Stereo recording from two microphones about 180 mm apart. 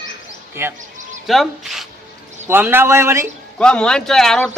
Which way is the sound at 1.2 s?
Centre (ahead or behind).